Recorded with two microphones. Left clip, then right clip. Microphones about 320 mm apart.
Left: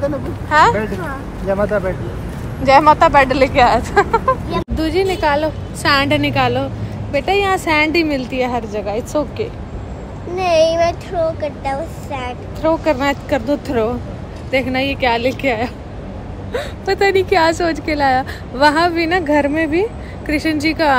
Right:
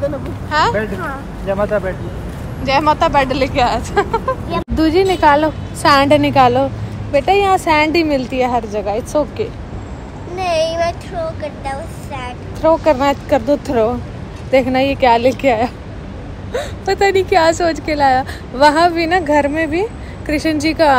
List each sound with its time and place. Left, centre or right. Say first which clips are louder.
0.0 s a woman's voice: even; centre
4.7 s a woman's voice: right 5 dB; centre
5.9 s a woman's voice: right 4 dB; centre
10.3 s speech: left 3 dB; left
12.6 s a woman's voice: right 3 dB; centre